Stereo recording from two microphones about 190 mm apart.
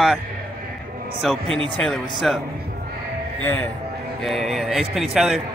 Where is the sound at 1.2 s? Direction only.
Centre (ahead or behind).